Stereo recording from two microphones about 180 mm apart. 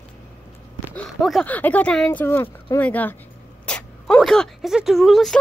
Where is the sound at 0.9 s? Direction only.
5° left (ahead or behind).